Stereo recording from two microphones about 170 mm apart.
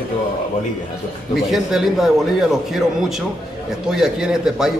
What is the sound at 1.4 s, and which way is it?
A man's voice, centre (ahead or behind).